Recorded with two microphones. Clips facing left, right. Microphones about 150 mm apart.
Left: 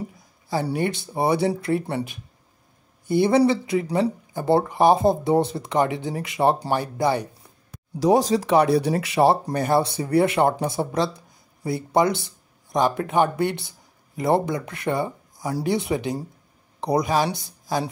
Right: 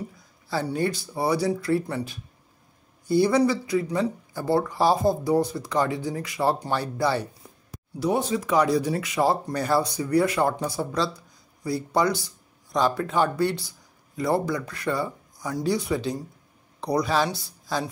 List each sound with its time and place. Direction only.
0.7 s speech: 20° left (ahead or behind)
8.0 s speech: 90° left
8.6 s speech: 65° left (ahead or behind)
9.2 s speech: 35° left (ahead or behind)
9.5 s speech: 25° left (ahead or behind)